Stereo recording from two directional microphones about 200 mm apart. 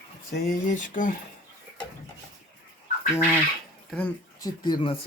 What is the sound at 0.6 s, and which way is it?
Speech, 40° left (ahead or behind).